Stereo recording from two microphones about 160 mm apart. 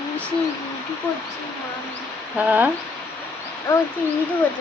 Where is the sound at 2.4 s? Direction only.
10° right (ahead or behind).